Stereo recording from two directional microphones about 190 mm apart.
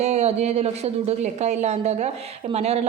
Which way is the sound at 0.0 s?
35° right (ahead or behind).